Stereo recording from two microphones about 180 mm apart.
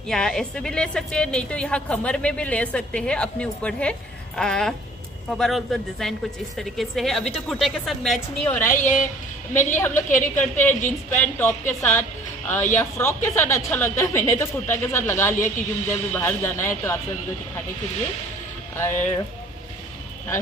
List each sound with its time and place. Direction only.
0.1 s speech: 5° left (ahead or behind)
8.7 s a woman's voice: 45° left (ahead or behind)
9.8 s a woman's voice: 10° left (ahead or behind)
10.0 s a woman's voice: 45° left (ahead or behind)
10.6 s a woman's voice: 10° left (ahead or behind)
18.8 s a woman's voice: 15° left (ahead or behind)